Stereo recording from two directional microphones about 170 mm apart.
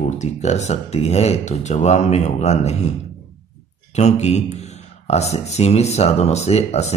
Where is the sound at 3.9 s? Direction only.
40° left (ahead or behind).